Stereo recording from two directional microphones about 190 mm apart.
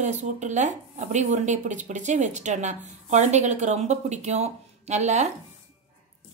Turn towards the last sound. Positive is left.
turn(degrees=-35)  # may be behind; listen again after turning